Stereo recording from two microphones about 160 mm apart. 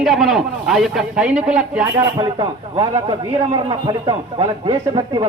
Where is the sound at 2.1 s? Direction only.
25° right (ahead or behind).